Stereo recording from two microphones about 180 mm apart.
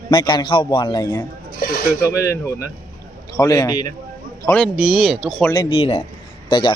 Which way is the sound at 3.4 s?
20° left (ahead or behind).